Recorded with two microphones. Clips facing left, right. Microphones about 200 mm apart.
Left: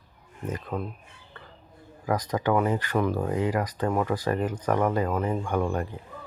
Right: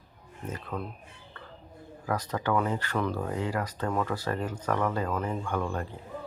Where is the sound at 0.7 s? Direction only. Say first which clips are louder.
Left 3 dB; 25° left (ahead or behind).